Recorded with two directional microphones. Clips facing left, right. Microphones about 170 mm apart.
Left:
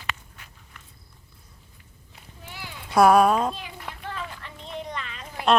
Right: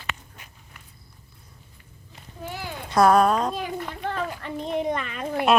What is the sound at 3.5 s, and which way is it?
Speech, 45° right (ahead or behind).